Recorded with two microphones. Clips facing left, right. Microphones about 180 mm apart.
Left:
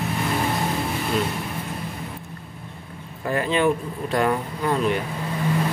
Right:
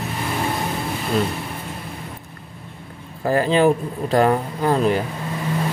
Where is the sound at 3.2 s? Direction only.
35° right (ahead or behind).